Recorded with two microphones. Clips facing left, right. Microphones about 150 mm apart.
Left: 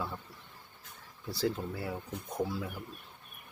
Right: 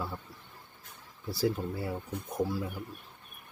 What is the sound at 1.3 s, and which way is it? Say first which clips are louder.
Speech: right 3 dB; 10° right (ahead or behind).